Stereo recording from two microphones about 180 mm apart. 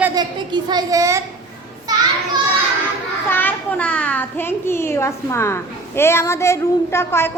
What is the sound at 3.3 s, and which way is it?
A child's voice, 10° left (ahead or behind).